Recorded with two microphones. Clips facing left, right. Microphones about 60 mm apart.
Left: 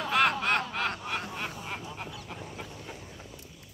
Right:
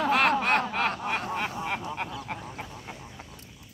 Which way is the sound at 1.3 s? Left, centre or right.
Right.